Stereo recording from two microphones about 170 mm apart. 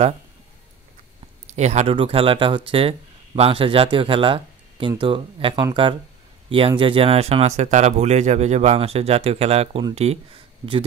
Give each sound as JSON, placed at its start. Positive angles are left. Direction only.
{"t": 1.5, "sound": "speech", "side_deg": -40}